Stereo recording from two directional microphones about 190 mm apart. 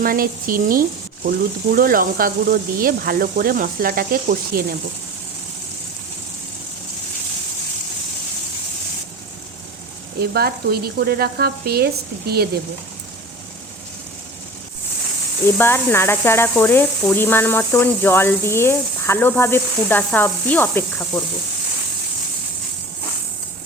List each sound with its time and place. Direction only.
0.0 s speech: 50° right (ahead or behind)
10.2 s speech: 55° right (ahead or behind)
15.4 s speech: 10° left (ahead or behind)